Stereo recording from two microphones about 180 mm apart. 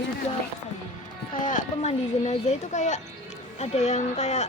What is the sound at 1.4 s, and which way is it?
A woman's voice, 45° left (ahead or behind).